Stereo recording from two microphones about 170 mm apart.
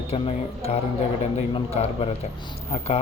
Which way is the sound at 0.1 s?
35° left (ahead or behind).